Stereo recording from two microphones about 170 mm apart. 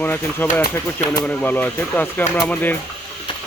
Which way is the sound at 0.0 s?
10° left (ahead or behind).